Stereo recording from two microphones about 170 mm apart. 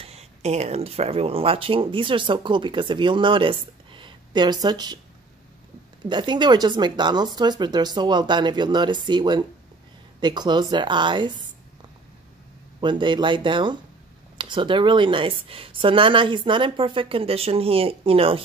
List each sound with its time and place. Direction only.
0.0 s speech: 40° right (ahead or behind)
6.0 s speech: 25° right (ahead or behind)
12.8 s speech: 30° right (ahead or behind)